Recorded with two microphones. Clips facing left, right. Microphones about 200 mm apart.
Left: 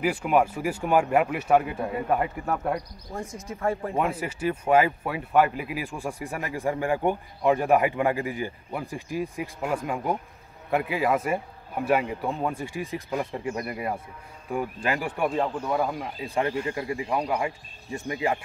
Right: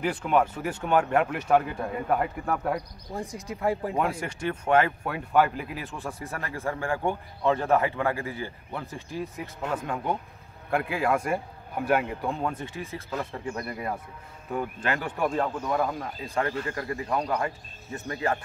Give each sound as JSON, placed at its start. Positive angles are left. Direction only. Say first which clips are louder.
{"t": 0.0, "sound": "speech", "louder": "left 2 dB", "side_deg": 10}
{"t": 3.1, "sound": "speech", "louder": "right 1 dB", "side_deg": -20}
{"t": 3.9, "sound": "a man's voice", "louder": "left 1 dB", "side_deg": 5}